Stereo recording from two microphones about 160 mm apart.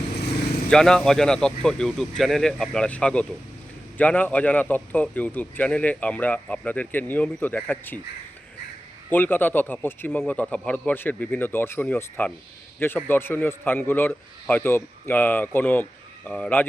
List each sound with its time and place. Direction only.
0.2 s vehicle: 80° left
0.7 s a man's voice: 5° left (ahead or behind)
9.0 s a man's voice: 10° left (ahead or behind)